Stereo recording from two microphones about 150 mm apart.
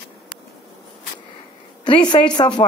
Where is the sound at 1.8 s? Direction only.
30° left (ahead or behind).